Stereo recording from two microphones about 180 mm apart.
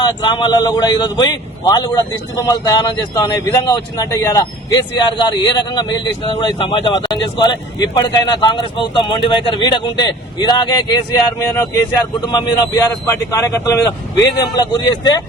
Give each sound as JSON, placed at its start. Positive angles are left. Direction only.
{"t": 0.0, "sound": "speech", "side_deg": 25}